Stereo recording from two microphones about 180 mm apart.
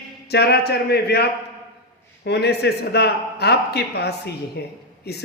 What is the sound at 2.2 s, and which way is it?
Speech, 65° left (ahead or behind).